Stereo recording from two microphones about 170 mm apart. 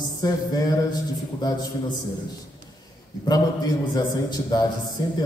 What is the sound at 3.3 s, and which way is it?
A man's voice, 25° left (ahead or behind).